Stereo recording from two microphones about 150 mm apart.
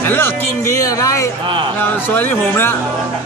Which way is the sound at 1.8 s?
10° left (ahead or behind).